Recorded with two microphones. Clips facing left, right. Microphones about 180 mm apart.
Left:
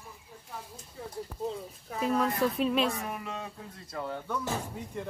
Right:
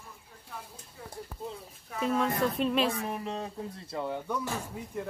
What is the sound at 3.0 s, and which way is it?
Speech, 30° right (ahead or behind).